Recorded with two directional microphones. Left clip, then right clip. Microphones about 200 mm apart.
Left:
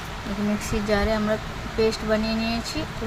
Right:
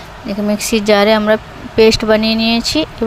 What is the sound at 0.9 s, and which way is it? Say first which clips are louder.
Speech: right 13 dB; 50° right (ahead or behind).